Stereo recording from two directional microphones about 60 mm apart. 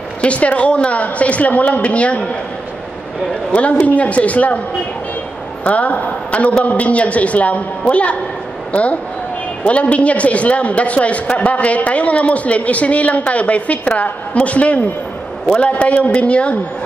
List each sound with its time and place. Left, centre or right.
0.2 s a man's voice: left
3.5 s a man's voice: left
5.7 s a man's voice: left
9.7 s a man's voice: left